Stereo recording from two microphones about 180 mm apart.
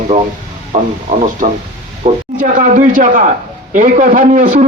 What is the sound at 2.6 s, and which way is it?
A man's voice, 50° right (ahead or behind).